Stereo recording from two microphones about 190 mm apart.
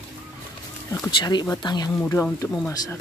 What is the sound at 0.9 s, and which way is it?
Speech, 20° left (ahead or behind).